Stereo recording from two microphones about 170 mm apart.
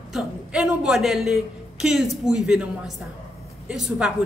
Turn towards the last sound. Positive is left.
turn(degrees=0)  # may be behind; listen again after turning